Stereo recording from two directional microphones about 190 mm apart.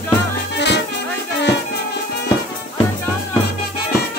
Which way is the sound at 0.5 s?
65° left (ahead or behind).